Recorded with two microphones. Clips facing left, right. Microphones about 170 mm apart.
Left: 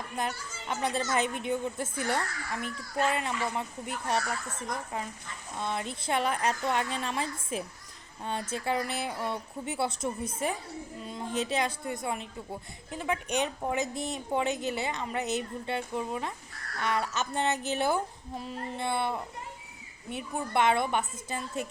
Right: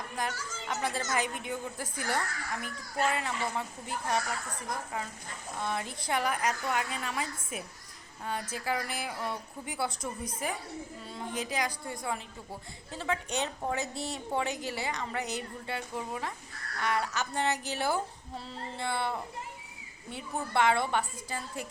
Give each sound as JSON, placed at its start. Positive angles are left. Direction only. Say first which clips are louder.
{"t": 0.2, "sound": "a woman's voice", "louder": "left 1 dB", "side_deg": 25}
{"t": 5.6, "sound": "a woman's voice", "louder": "left 2 dB", "side_deg": 20}